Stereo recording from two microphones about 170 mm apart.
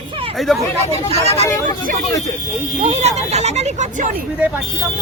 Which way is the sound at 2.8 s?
40° right (ahead or behind).